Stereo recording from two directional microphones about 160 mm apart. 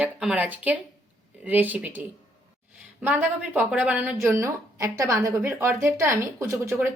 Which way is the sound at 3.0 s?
10° right (ahead or behind).